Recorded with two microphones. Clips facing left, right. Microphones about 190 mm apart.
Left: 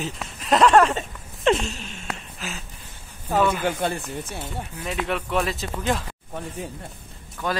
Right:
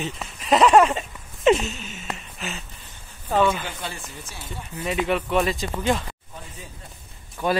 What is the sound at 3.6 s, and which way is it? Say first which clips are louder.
Speech: left 9 dB; 55° left (ahead or behind).